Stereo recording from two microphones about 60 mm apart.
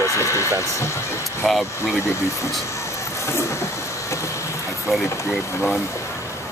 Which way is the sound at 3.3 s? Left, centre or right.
Left.